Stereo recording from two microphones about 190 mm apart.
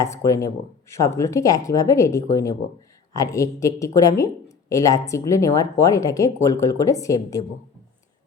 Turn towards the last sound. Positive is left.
turn(degrees=15)  # may be behind; listen again after turning